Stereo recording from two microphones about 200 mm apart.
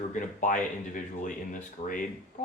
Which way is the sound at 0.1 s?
40° left (ahead or behind).